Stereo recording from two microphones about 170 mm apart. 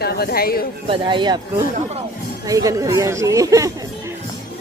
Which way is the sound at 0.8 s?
30° right (ahead or behind).